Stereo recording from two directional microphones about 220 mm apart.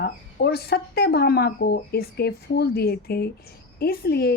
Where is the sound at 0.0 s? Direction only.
45° left (ahead or behind).